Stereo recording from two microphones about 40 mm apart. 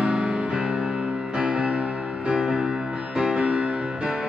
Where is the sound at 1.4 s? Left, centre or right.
Right.